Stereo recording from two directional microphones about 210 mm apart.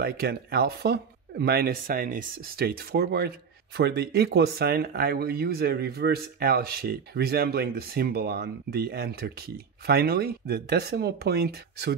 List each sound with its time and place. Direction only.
0.0 s speech: 45° right (ahead or behind)